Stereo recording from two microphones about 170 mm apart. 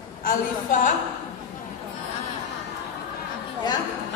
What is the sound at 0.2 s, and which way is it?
Speech, 50° left (ahead or behind).